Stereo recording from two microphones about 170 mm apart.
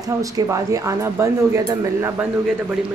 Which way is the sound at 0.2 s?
20° right (ahead or behind).